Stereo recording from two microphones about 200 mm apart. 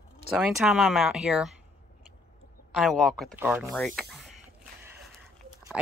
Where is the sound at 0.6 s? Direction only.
Centre (ahead or behind).